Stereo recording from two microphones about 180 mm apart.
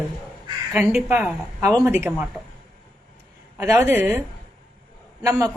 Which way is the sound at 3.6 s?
15° right (ahead or behind).